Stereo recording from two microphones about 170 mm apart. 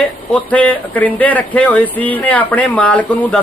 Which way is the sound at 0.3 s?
10° left (ahead or behind).